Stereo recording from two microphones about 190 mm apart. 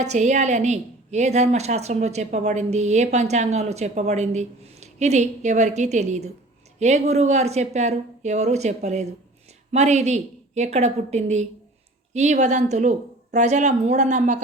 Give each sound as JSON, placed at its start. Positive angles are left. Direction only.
{"t": 0.0, "sound": "a woman's voice", "side_deg": -35}